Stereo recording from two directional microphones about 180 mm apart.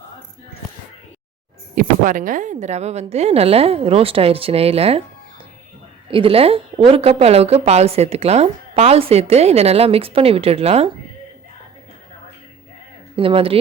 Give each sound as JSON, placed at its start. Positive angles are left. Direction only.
{"t": 1.7, "sound": "a woman's voice", "side_deg": -50}
{"t": 6.1, "sound": "a woman's voice", "side_deg": -30}
{"t": 13.1, "sound": "a woman's voice", "side_deg": -30}